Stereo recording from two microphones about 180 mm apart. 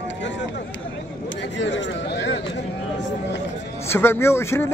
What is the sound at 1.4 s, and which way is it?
Speech, 80° left.